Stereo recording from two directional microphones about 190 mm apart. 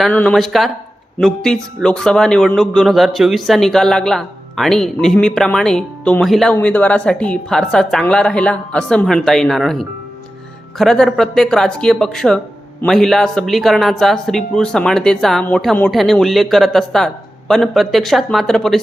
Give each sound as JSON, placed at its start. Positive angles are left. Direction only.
{"t": 0.0, "sound": "a man's voice", "side_deg": 5}